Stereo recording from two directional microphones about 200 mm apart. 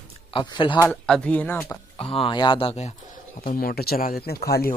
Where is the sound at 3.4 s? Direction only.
50° left (ahead or behind).